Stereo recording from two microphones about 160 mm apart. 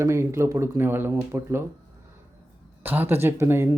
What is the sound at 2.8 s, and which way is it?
Speech, 10° right (ahead or behind).